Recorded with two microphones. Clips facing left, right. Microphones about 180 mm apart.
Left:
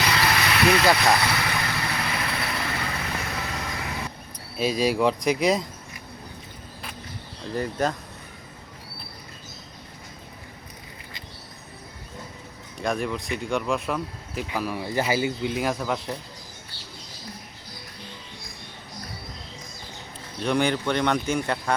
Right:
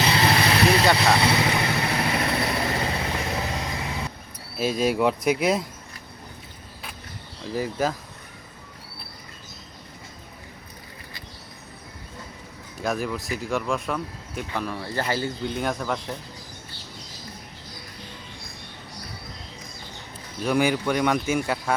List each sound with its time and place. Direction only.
0.0 s vehicle: 25° right (ahead or behind)
0.9 s speech: 25° right (ahead or behind)
2.1 s vehicle: 30° right (ahead or behind)
4.5 s speech: centre (ahead or behind)
7.5 s speech: 5° right (ahead or behind)
12.7 s speech: centre (ahead or behind)
20.4 s speech: 5° right (ahead or behind)